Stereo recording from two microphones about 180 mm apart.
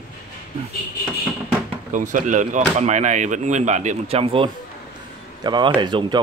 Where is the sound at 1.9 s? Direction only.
45° right (ahead or behind).